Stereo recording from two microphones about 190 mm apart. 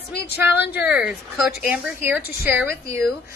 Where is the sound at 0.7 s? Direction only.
5° right (ahead or behind).